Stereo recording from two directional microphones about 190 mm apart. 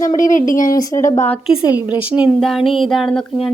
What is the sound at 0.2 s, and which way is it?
Speech, 45° left (ahead or behind).